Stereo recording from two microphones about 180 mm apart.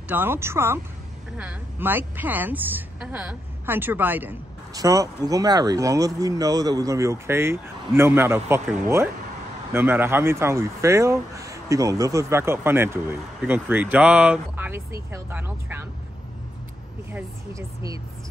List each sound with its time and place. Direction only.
0.1 s a woman's voice: 10° right (ahead or behind)
17.1 s a woman's voice: 15° right (ahead or behind)